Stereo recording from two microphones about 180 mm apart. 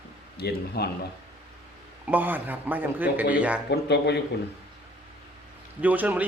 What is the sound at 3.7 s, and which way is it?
Speech, 70° left (ahead or behind).